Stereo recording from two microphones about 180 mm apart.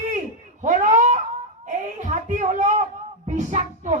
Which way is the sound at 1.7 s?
40° right (ahead or behind).